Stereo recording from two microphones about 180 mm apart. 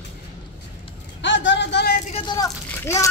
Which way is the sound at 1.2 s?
85° left.